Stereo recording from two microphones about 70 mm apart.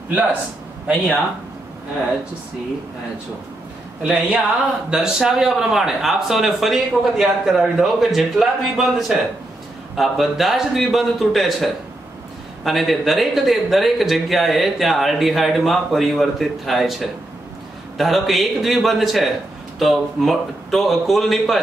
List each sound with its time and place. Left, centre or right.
0.1 s a man's voice: right
4.0 s speech: centre